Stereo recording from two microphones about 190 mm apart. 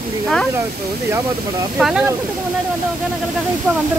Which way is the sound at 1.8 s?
Centre (ahead or behind).